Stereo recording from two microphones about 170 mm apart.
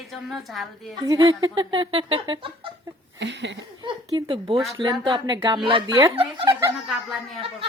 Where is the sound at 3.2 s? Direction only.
90° right.